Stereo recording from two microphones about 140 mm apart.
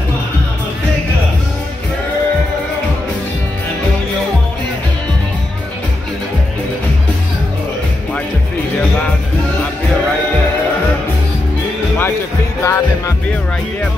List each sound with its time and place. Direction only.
12.6 s music: 20° left (ahead or behind)